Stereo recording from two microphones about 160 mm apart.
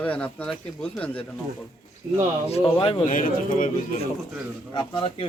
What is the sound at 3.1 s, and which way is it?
Speech, 55° left (ahead or behind).